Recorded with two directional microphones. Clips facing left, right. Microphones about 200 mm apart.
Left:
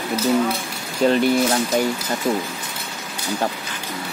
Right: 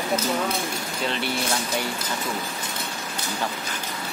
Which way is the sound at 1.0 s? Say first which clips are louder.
Left 12 dB; 45° left (ahead or behind).